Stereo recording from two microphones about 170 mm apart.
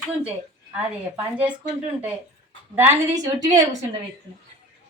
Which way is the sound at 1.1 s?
10° right (ahead or behind).